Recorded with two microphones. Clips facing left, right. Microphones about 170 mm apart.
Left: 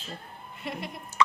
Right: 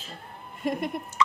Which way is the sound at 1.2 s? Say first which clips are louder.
Left 1 dB; 65° left (ahead or behind).